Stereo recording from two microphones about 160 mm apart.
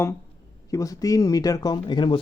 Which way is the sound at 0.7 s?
20° left (ahead or behind).